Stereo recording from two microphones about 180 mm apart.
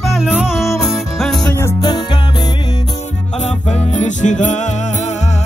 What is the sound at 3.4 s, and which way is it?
Music, 40° left (ahead or behind).